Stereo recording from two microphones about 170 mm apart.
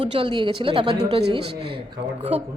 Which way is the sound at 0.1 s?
30° right (ahead or behind).